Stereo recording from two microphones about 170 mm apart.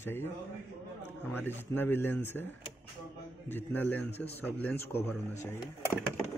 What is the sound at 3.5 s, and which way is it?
Speech, 10° left (ahead or behind).